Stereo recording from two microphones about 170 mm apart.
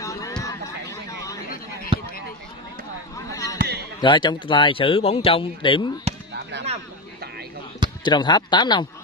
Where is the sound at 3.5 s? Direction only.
70° right (ahead or behind).